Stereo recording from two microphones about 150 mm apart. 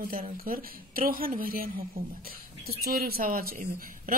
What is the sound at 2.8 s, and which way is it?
A woman's voice, 90° right.